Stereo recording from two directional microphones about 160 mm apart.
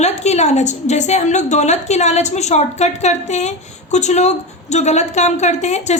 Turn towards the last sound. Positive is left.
turn(degrees=45)  # may be behind; listen again after turning